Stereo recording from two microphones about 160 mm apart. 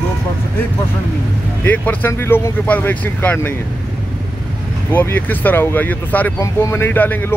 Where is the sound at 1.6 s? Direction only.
10° left (ahead or behind).